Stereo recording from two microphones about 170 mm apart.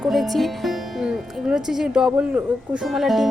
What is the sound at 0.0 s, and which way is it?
Music, centre (ahead or behind).